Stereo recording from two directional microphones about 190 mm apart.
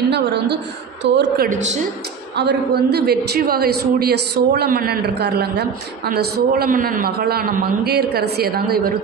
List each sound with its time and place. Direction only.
0.1 s a man's voice: 65° right (ahead or behind)